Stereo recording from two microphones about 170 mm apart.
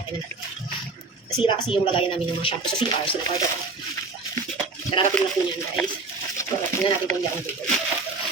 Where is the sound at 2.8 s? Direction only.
25° left (ahead or behind).